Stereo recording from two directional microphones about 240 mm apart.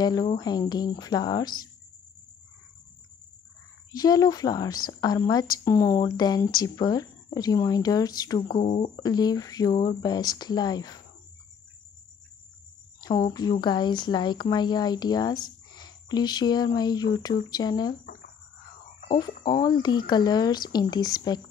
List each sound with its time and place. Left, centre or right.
0.0 s a woman's voice: centre
3.9 s a woman's voice: centre
8.5 s a woman's voice: left
13.3 s a woman's voice: centre
19.6 s a woman's voice: centre